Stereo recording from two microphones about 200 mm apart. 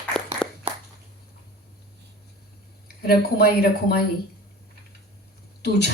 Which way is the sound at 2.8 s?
50° left (ahead or behind).